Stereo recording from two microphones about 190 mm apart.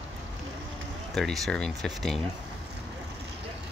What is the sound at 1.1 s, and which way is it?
Speech, centre (ahead or behind).